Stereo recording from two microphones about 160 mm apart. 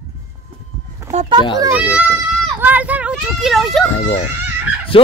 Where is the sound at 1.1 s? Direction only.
45° right (ahead or behind).